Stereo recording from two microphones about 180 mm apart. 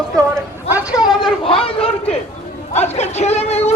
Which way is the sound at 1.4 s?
30° left (ahead or behind).